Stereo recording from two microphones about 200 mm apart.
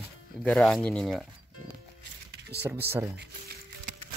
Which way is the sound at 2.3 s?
55° right (ahead or behind).